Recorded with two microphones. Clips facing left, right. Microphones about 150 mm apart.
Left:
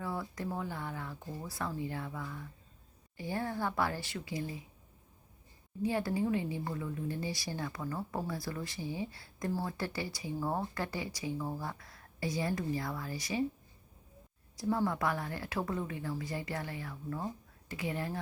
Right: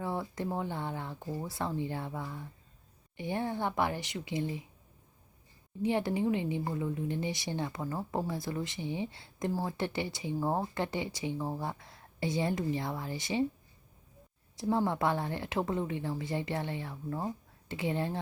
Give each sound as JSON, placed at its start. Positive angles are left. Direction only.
{"t": 0.0, "sound": "a woman's voice", "side_deg": -25}
{"t": 5.8, "sound": "a woman's voice", "side_deg": -20}
{"t": 14.5, "sound": "a woman's voice", "side_deg": -20}